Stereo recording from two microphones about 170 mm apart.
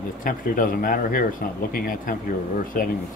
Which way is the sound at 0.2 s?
55° left (ahead or behind).